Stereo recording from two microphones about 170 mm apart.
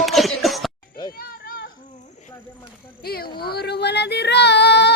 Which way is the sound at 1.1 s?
60° left (ahead or behind).